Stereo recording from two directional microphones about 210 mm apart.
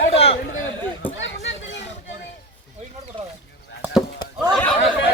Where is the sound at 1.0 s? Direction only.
10° left (ahead or behind).